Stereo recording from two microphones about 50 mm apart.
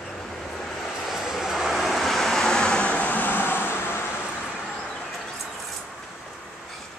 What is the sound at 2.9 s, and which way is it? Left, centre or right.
Vehicle, left.